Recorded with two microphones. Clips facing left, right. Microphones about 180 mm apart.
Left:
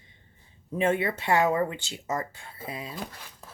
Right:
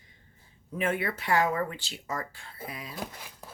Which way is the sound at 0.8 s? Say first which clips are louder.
Left 4 dB; 25° left (ahead or behind).